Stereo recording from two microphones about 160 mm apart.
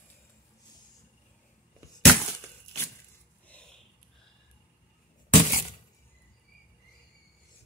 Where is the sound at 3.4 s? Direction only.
10° left (ahead or behind).